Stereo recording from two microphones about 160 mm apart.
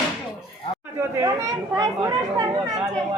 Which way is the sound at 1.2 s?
20° right (ahead or behind).